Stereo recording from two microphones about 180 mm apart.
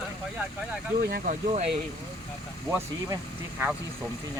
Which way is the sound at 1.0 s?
55° right (ahead or behind).